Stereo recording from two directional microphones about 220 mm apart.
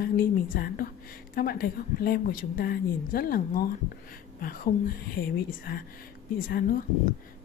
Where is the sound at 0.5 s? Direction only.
45° left (ahead or behind).